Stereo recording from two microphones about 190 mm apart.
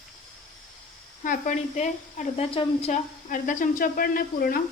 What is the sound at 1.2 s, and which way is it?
A woman's voice, 45° left (ahead or behind).